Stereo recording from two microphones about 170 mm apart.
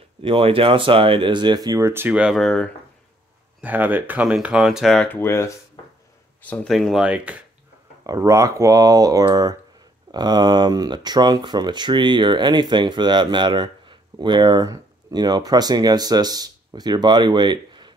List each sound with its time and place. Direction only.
0.2 s speech: 30° right (ahead or behind); by 2.7 s centre (ahead or behind)
3.6 s speech: 10° right (ahead or behind)
8.1 s speech: 20° right (ahead or behind)